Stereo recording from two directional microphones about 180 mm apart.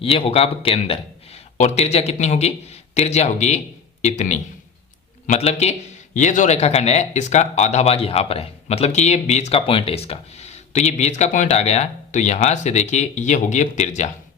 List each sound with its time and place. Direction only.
0.0 s a man's voice: 35° left (ahead or behind)